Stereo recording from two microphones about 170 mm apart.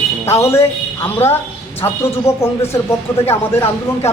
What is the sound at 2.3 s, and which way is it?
Speech, 40° left (ahead or behind).